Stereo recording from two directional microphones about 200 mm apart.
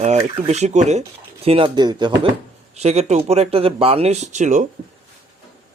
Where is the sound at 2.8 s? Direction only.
30° right (ahead or behind).